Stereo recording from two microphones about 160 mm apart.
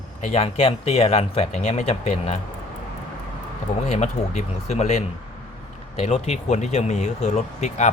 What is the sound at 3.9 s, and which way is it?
Speech, 45° left (ahead or behind).